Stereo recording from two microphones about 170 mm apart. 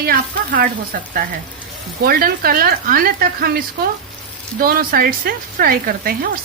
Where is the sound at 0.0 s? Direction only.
60° right (ahead or behind).